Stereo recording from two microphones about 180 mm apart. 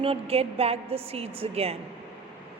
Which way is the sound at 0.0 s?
30° right (ahead or behind).